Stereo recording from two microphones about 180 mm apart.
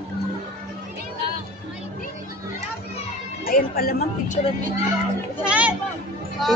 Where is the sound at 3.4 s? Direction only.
55° left (ahead or behind).